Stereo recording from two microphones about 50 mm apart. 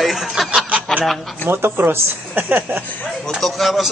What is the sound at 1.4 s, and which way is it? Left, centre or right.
Speech, right.